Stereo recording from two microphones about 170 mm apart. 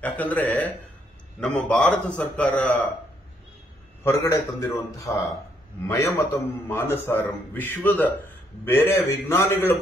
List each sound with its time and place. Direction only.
0.0 s a man's voice: 10° left (ahead or behind)
4.0 s a man's voice: 15° left (ahead or behind)